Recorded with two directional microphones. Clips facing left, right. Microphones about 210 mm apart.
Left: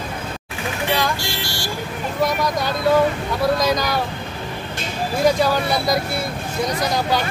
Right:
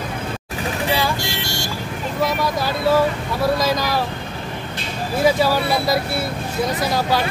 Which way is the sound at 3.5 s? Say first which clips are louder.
Even; 5° right (ahead or behind).